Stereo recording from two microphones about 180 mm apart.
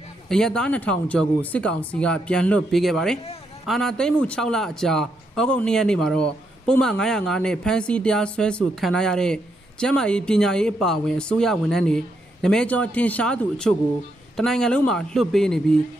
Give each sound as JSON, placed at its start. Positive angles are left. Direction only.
{"t": 0.3, "sound": "a man's voice", "side_deg": 5}